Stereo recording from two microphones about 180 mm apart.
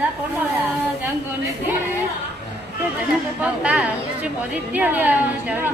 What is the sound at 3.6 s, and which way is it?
A woman's voice, 5° right (ahead or behind).